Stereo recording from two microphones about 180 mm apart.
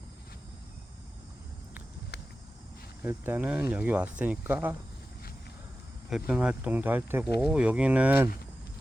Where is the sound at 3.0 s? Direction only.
10° right (ahead or behind).